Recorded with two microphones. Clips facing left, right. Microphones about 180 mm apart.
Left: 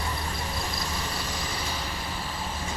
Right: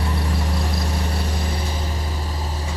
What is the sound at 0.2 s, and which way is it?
Vehicle, 75° right (ahead or behind).